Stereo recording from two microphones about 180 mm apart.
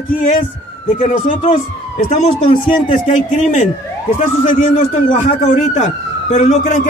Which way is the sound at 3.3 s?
40° left (ahead or behind).